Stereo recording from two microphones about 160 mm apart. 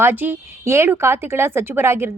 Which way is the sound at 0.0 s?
15° right (ahead or behind).